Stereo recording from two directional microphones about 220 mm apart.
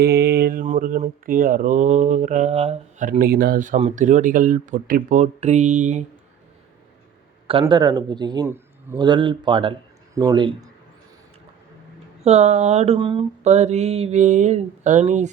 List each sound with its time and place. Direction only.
0.0 s mantra: 45° right (ahead or behind)
7.6 s a man's voice: 20° right (ahead or behind)
9.0 s a man's voice: 20° right (ahead or behind)
12.2 s mantra: 30° right (ahead or behind)